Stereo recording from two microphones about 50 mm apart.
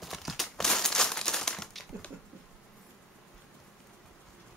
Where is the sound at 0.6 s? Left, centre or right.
Centre.